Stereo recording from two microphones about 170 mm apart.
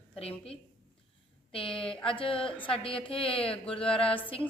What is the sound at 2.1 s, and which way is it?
Speech, 30° left (ahead or behind).